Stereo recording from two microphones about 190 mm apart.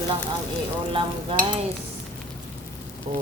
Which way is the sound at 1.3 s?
30° right (ahead or behind).